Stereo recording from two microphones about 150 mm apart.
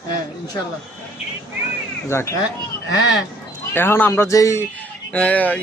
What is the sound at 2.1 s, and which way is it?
Speech, 15° left (ahead or behind).